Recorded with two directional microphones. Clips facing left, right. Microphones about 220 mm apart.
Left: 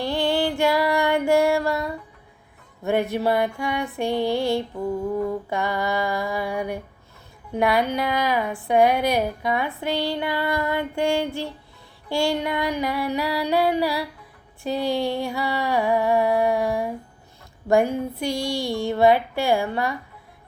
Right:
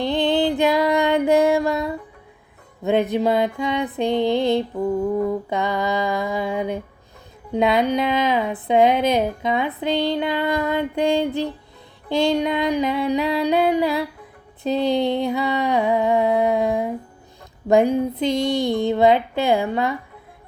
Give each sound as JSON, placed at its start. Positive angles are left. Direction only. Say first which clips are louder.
{"t": 0.0, "sound": "female singing", "louder": "right 3 dB", "side_deg": -20}
{"t": 2.8, "sound": "speech", "louder": "right 3 dB", "side_deg": -20}